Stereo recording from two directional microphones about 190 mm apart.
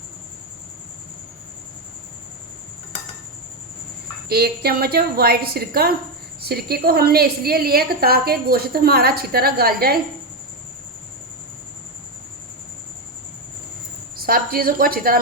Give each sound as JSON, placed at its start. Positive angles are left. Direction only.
{"t": 4.3, "sound": "a woman's voice", "side_deg": -55}
{"t": 14.2, "sound": "a woman's voice", "side_deg": -50}